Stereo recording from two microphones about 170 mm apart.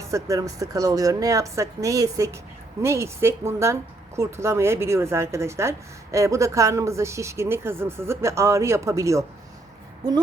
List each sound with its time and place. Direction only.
0.0 s a woman's voice: 20° right (ahead or behind)